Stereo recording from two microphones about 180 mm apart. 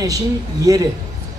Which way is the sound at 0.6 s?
20° right (ahead or behind).